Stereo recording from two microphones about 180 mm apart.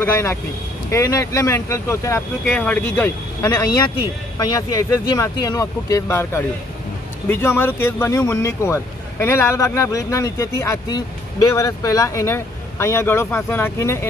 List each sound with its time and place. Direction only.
0.0 s speech: 15° left (ahead or behind)